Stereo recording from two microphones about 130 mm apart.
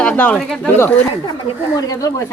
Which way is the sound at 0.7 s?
15° left (ahead or behind).